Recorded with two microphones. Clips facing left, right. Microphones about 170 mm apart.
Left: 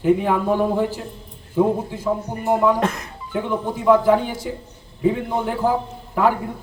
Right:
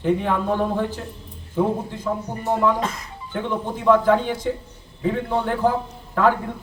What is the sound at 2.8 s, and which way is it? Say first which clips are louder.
Speech: left 5 dB; 65° left (ahead or behind).